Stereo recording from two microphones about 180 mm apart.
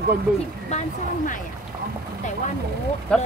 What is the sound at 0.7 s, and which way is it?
Speech, 45° left (ahead or behind).